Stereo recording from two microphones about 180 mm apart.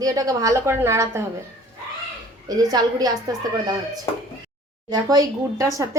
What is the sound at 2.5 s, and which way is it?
A woman's voice, 20° right (ahead or behind).